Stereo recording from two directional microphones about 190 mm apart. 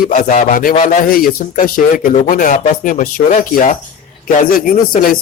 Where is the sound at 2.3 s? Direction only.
45° left (ahead or behind).